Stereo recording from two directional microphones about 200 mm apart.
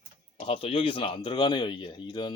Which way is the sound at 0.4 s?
25° left (ahead or behind).